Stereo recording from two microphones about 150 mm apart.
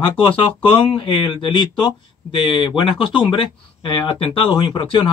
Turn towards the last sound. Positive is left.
turn(degrees=35)  # may be behind; listen again after turning